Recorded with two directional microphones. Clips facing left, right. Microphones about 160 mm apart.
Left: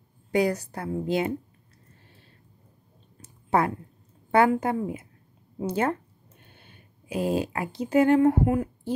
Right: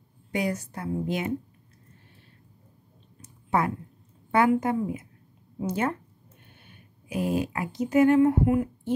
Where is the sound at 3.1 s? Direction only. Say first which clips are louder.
Left 2 dB; 30° left (ahead or behind).